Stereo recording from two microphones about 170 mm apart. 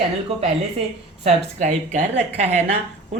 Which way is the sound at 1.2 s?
45° right (ahead or behind).